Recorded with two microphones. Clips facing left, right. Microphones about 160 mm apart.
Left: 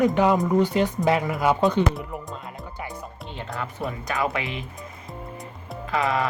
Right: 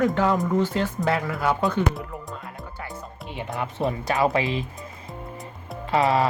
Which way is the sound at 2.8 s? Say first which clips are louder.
Left 2 dB; 20° left (ahead or behind).